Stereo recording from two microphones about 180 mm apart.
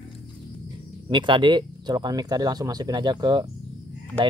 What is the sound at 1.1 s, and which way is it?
Speech, 25° right (ahead or behind).